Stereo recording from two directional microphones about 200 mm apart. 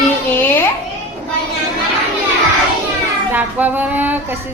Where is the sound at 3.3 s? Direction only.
10° right (ahead or behind).